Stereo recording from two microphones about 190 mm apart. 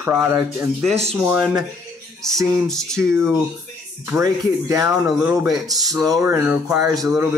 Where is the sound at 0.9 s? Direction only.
35° right (ahead or behind).